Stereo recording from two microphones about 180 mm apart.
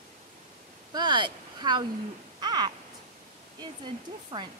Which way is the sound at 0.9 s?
25° right (ahead or behind).